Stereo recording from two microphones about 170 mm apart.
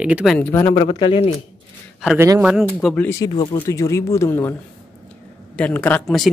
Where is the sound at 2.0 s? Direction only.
10° right (ahead or behind).